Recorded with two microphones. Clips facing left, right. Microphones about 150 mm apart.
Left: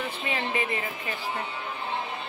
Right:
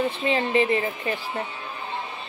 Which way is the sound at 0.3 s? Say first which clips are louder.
Right 8 dB; 30° right (ahead or behind).